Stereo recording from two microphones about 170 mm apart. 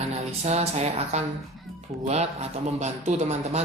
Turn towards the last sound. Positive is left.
turn(degrees=-40)  # may be behind; listen again after turning